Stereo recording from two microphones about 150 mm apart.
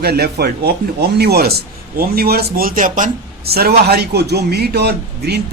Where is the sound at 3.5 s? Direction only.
90° right.